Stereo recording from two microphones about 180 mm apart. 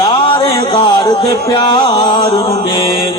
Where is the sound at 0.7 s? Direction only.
25° left (ahead or behind).